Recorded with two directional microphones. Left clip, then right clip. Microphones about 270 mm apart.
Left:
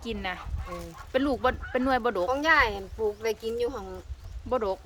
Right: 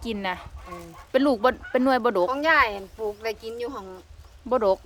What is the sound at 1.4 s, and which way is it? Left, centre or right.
Speech, right.